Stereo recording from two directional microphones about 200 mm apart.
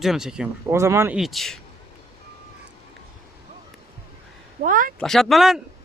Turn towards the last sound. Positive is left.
turn(degrees=0)  # may be behind; listen again after turning